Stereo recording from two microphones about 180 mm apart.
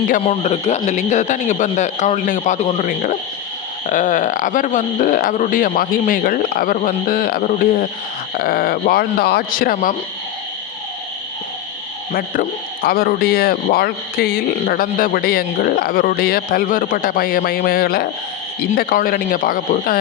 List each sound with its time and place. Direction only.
0.2 s a man's voice: 35° left (ahead or behind); by 9.9 s 50° left (ahead or behind)
12.1 s speech: 55° left (ahead or behind)